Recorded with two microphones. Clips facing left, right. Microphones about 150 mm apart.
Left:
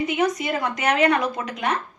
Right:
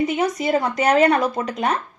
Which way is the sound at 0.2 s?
35° right (ahead or behind).